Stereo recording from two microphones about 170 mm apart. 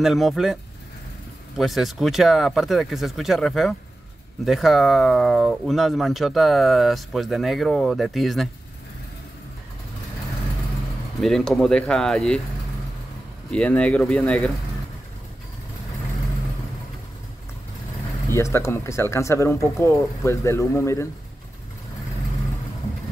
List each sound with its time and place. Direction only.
0.0 s speech: centre (ahead or behind)
1.6 s speech: centre (ahead or behind)
11.1 s speech: 5° left (ahead or behind)
13.5 s speech: 5° left (ahead or behind)
18.3 s speech: 15° left (ahead or behind)